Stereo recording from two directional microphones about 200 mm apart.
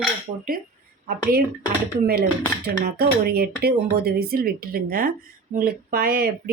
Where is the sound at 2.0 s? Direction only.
50° right (ahead or behind).